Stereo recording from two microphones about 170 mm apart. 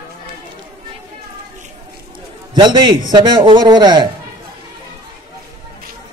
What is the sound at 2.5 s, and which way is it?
A man's voice, 25° right (ahead or behind).